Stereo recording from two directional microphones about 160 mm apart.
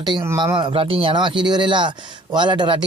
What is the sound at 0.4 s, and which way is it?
Speech, 30° right (ahead or behind).